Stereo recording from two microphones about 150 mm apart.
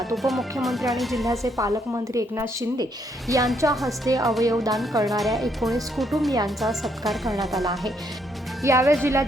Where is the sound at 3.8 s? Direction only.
20° right (ahead or behind).